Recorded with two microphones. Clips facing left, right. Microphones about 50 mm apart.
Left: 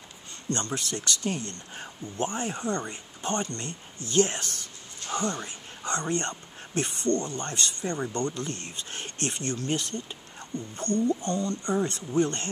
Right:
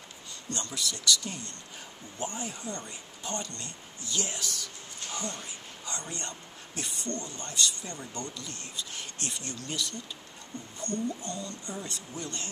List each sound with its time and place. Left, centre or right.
0.5 s speech: left